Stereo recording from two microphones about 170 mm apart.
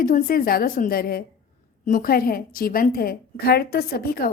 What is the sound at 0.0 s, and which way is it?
A woman's voice, 60° left (ahead or behind).